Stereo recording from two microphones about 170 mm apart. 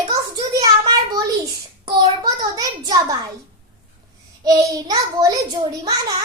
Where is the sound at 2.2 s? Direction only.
20° right (ahead or behind).